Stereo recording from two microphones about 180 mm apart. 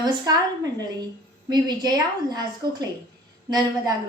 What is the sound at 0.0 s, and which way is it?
A woman's voice, 20° right (ahead or behind).